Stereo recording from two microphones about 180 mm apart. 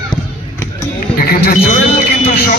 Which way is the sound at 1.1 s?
55° left (ahead or behind).